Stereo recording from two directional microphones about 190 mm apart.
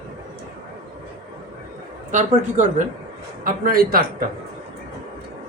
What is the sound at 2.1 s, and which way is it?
Speech, 40° right (ahead or behind).